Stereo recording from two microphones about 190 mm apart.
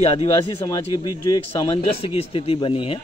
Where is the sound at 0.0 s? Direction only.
30° left (ahead or behind).